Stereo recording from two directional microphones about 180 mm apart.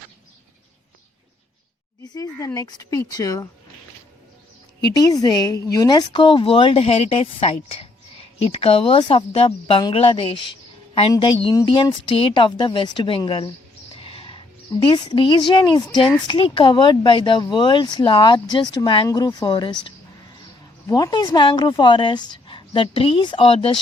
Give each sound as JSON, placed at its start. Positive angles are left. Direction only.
{"t": 2.0, "sound": "speech", "side_deg": 20}
{"t": 4.8, "sound": "a woman's voice", "side_deg": 20}
{"t": 14.0, "sound": "music", "side_deg": 30}
{"t": 14.8, "sound": "speech", "side_deg": 25}
{"t": 20.8, "sound": "speech", "side_deg": 20}